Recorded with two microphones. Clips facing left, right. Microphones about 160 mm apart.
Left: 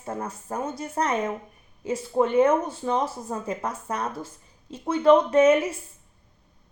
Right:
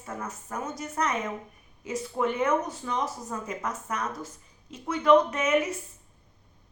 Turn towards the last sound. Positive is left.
turn(degrees=30)  # may be behind; listen again after turning